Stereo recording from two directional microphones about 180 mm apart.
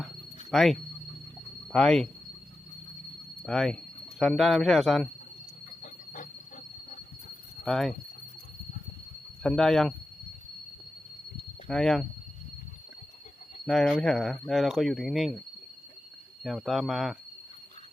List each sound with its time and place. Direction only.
0.5 s speech: centre (ahead or behind)
3.4 s speech: centre (ahead or behind)
7.6 s speech: centre (ahead or behind)
9.4 s speech: 5° left (ahead or behind)
11.7 s speech: centre (ahead or behind)
13.7 s speech: 5° left (ahead or behind)
16.4 s speech: centre (ahead or behind)